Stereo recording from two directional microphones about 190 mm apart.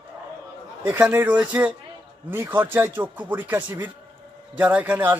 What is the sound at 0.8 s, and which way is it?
A man's voice, 10° right (ahead or behind).